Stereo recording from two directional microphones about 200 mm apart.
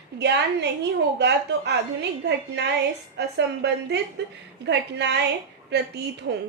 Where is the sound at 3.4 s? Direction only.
60° right (ahead or behind).